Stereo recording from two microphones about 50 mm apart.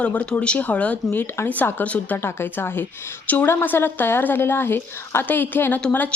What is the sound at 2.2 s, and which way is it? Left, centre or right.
Speech, left.